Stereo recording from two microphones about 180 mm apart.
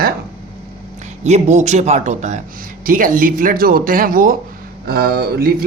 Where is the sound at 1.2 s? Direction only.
40° right (ahead or behind).